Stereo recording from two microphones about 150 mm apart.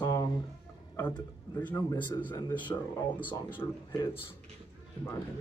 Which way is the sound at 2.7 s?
20° left (ahead or behind).